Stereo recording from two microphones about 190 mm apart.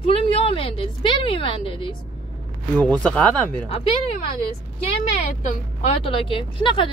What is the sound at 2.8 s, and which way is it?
Speech, 5° left (ahead or behind).